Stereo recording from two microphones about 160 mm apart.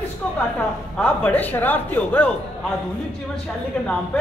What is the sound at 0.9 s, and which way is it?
A man's voice, 10° left (ahead or behind).